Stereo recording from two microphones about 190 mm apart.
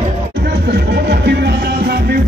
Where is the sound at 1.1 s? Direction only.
60° right (ahead or behind).